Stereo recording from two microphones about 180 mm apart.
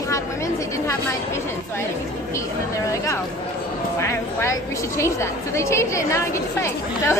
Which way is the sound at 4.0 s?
15° left (ahead or behind).